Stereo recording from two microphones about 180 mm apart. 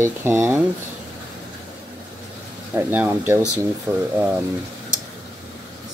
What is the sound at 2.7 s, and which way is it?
Speech, 10° right (ahead or behind).